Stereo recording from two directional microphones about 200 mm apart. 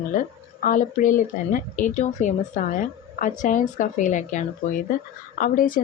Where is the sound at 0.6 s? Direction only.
40° left (ahead or behind).